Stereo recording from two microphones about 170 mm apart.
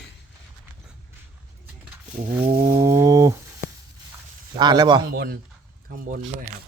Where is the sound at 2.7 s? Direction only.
15° right (ahead or behind).